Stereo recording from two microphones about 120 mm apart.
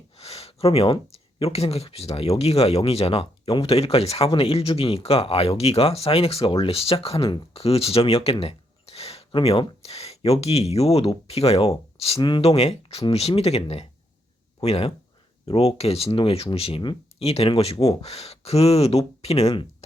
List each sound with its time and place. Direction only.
0.2 s speech: 60° left (ahead or behind)